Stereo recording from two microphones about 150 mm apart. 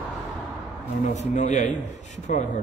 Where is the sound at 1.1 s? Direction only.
50° left (ahead or behind).